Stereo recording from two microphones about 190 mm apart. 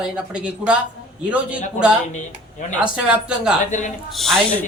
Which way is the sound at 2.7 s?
5° right (ahead or behind).